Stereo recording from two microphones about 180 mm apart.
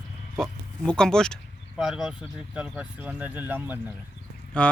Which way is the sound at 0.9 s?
5° left (ahead or behind).